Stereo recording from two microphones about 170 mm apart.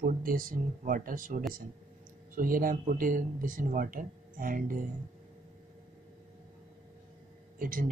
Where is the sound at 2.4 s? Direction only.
55° right (ahead or behind).